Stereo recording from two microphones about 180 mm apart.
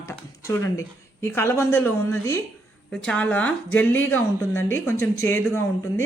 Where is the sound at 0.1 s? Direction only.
15° left (ahead or behind).